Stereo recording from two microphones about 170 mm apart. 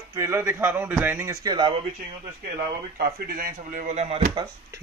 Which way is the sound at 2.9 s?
60° right (ahead or behind).